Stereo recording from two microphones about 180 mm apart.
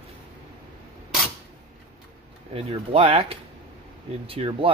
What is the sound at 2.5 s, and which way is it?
Speech, 30° right (ahead or behind).